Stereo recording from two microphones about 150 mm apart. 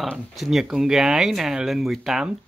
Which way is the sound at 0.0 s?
Centre (ahead or behind).